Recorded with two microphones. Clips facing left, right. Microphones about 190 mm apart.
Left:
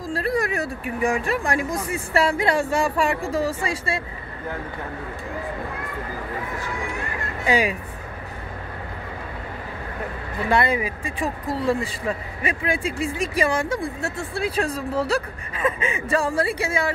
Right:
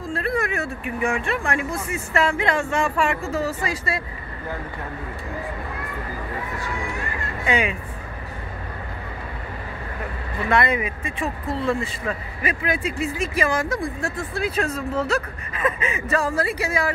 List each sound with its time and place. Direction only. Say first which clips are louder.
0.1 s speech: left 1 dB; 35° left (ahead or behind)
7.4 s speech: left 2 dB; 35° left (ahead or behind)
10.5 s speech: even; 30° left (ahead or behind)
13.7 s speech: right 1 dB; 5° left (ahead or behind)
14.1 s speech: even; 30° left (ahead or behind)